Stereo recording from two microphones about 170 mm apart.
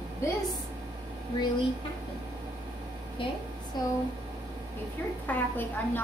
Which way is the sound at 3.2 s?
30° left (ahead or behind).